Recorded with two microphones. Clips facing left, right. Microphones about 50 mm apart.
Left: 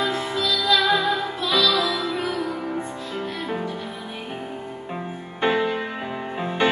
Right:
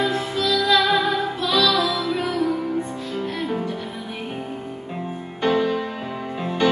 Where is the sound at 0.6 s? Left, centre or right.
Centre.